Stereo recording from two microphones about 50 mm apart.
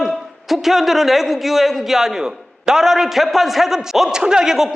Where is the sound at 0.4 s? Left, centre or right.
Centre.